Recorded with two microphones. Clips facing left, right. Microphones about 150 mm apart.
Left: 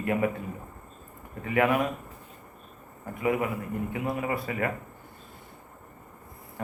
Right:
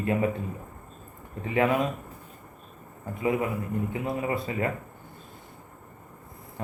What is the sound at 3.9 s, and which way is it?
Speech, 25° right (ahead or behind).